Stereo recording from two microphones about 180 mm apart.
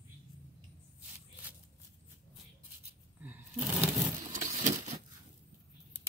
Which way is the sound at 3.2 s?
10° right (ahead or behind).